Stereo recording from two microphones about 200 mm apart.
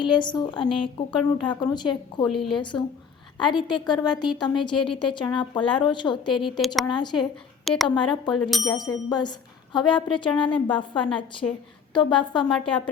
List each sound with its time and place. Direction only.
0.0 s a woman's voice: 25° left (ahead or behind)
2.2 s a woman's voice: centre (ahead or behind)
3.3 s a woman's voice: 20° left (ahead or behind)
8.4 s a woman's voice: centre (ahead or behind)
8.7 s a woman's voice: 20° left (ahead or behind)
12.5 s a woman's voice: 5° left (ahead or behind)